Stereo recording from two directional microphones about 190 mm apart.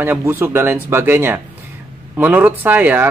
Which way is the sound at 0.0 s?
10° right (ahead or behind).